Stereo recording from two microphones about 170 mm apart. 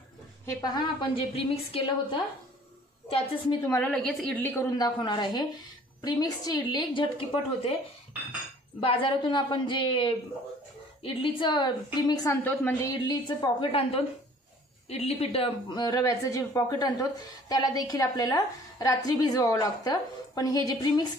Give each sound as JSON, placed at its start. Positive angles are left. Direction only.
{"t": 0.5, "sound": "a woman's voice", "side_deg": 25}
{"t": 3.6, "sound": "a woman's voice", "side_deg": 10}
{"t": 4.7, "sound": "a woman's voice", "side_deg": 25}
{"t": 8.8, "sound": "a woman's voice", "side_deg": 30}
{"t": 12.4, "sound": "a woman's voice", "side_deg": 10}
{"t": 13.0, "sound": "a woman's voice", "side_deg": 25}